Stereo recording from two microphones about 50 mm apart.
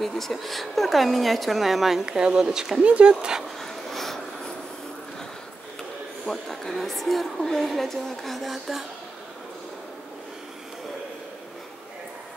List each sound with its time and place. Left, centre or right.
0.0 s a woman's voice: centre
2.8 s speech: right
3.4 s dog: centre
6.2 s a woman's voice: centre